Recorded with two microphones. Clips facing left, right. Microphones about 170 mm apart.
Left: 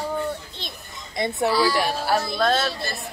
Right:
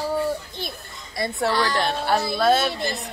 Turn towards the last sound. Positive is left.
turn(degrees=-20)  # may be behind; listen again after turning